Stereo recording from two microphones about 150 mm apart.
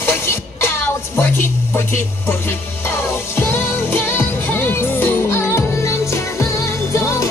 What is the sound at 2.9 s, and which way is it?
Music, 15° left (ahead or behind).